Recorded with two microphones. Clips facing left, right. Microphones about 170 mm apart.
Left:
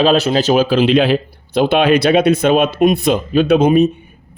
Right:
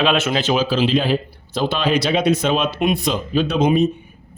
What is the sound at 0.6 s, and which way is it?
Speech, 55° left (ahead or behind).